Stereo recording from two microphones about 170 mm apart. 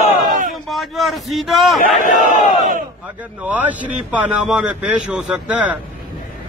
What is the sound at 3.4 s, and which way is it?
Speech, 10° right (ahead or behind).